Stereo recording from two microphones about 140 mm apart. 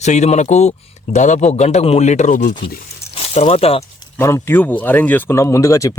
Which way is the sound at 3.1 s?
45° left (ahead or behind).